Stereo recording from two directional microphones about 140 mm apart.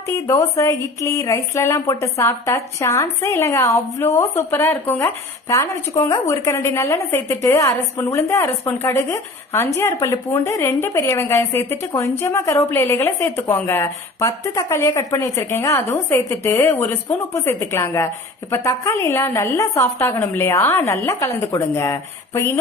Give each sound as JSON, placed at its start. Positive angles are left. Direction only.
{"t": 0.3, "sound": "a woman's voice", "side_deg": 25}